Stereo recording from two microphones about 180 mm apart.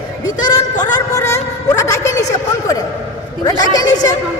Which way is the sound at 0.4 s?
20° left (ahead or behind).